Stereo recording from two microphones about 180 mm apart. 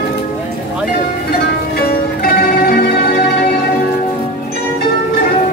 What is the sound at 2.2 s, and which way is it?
Music, 55° left (ahead or behind).